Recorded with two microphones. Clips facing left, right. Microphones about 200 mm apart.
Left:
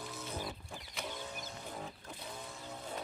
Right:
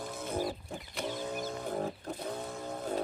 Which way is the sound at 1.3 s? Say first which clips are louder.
Right 10 dB; 55° right (ahead or behind).